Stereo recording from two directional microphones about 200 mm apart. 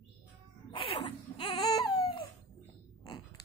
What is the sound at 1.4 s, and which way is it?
Baby cry, 25° left (ahead or behind).